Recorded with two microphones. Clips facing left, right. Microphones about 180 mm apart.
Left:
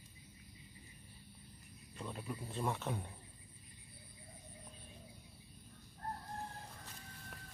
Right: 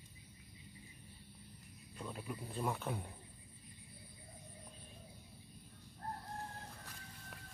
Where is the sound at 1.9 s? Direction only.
5° right (ahead or behind).